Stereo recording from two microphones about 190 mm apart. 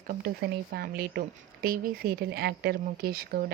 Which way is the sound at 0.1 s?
55° right (ahead or behind).